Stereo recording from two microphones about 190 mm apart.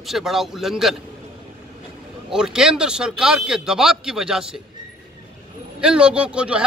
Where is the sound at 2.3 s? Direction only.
5° right (ahead or behind).